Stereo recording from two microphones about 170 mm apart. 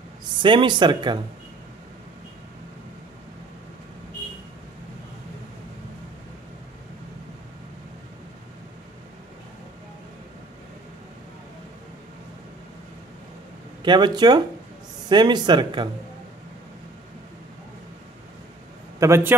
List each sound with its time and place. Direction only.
0.4 s speech: 30° right (ahead or behind)
13.8 s speech: 25° right (ahead or behind)
18.9 s a man's voice: 15° right (ahead or behind)